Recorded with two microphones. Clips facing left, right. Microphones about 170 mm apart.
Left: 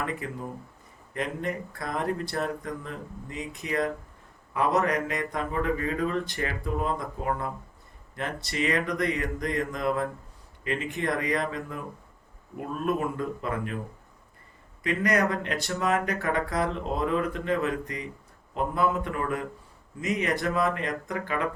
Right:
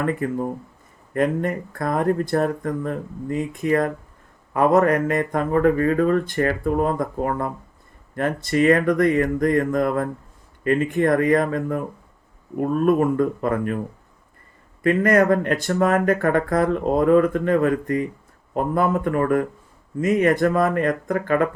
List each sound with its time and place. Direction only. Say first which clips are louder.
0.0 s speech: right 10 dB; 50° right (ahead or behind)
14.8 s speech: right 9 dB; 50° right (ahead or behind)